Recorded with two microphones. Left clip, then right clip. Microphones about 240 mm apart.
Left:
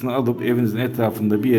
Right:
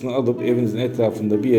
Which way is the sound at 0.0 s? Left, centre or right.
Left.